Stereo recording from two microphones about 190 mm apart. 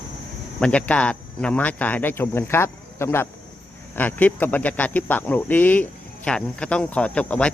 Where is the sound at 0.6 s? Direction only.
5° left (ahead or behind).